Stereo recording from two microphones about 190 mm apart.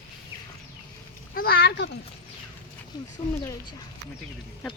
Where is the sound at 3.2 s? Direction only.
45° left (ahead or behind).